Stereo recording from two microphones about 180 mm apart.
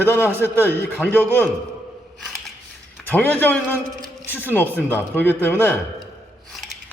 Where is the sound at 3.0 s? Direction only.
5° left (ahead or behind).